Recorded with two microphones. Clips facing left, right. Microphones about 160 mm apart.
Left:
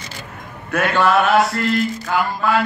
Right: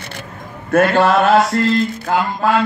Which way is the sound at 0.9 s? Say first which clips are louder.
Right 3 dB; 30° right (ahead or behind).